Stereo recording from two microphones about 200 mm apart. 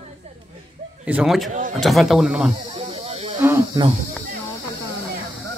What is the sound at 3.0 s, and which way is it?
Snake, 30° right (ahead or behind).